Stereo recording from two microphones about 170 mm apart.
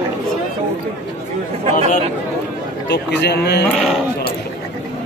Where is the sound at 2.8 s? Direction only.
90° left; by 3.6 s 75° left (ahead or behind).